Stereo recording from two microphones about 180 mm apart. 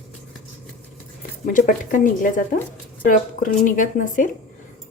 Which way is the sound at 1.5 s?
45° left (ahead or behind).